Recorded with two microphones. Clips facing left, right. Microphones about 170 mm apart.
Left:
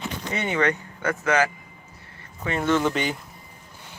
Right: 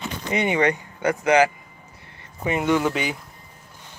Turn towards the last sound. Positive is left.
turn(degrees=-5)  # may be behind; listen again after turning